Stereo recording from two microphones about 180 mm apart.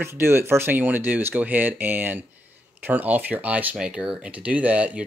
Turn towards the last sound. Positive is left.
turn(degrees=-5)  # may be behind; listen again after turning